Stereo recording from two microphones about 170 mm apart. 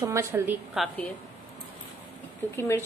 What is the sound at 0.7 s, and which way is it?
Speech, centre (ahead or behind).